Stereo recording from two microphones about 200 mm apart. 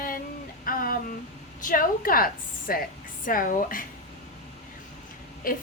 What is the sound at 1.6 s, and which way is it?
A woman's voice, 45° left (ahead or behind).